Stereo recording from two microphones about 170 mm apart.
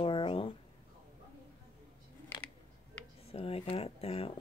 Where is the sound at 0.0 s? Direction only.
30° left (ahead or behind).